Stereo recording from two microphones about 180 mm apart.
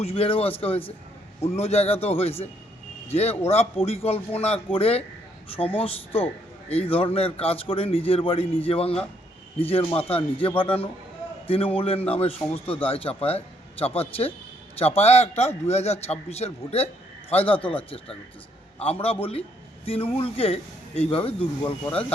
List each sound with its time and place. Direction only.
0.0 s a man's voice: 35° left (ahead or behind)
1.5 s a man's voice: 35° left (ahead or behind)
18.8 s a man's voice: 35° left (ahead or behind)